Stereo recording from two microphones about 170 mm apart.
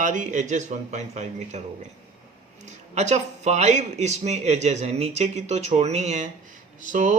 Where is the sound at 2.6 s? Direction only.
45° right (ahead or behind).